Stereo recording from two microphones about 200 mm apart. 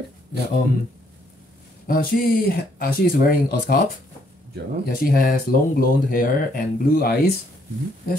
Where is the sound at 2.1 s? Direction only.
50° left (ahead or behind).